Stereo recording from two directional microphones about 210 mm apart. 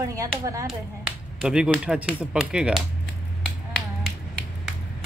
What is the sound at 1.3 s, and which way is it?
Speech, 5° right (ahead or behind).